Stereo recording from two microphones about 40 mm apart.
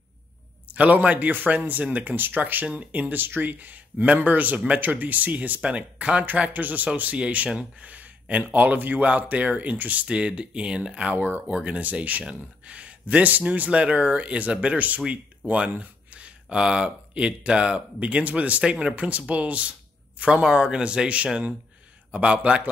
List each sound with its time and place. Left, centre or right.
0.7 s speech: right
5.7 s speech: right
7.2 s speech: right
7.8 s a sound: right
8.5 s speech: right
10.0 s speech: right
11.1 s speech: right
11.5 s speech: right
15.4 s speech: right
16.1 s speech: right
18.6 s speech: right
20.4 s speech: right